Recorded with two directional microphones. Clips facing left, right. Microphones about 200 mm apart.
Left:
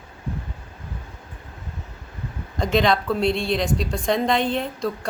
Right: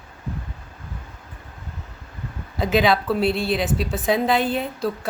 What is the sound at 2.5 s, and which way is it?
A woman's voice, 5° right (ahead or behind).